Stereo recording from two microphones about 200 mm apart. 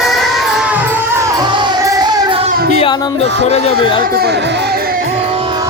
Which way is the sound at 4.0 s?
50° right (ahead or behind).